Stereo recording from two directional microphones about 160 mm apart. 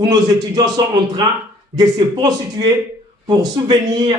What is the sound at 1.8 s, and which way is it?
Speech, 25° right (ahead or behind).